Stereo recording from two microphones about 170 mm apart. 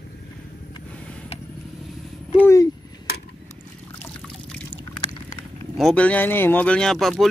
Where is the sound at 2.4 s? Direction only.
20° left (ahead or behind).